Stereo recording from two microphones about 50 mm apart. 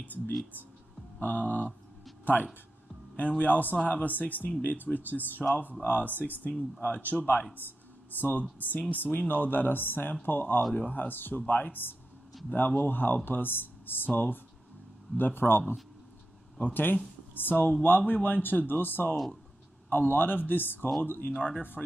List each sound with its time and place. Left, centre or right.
1.2 s speech: left
3.2 s speech: left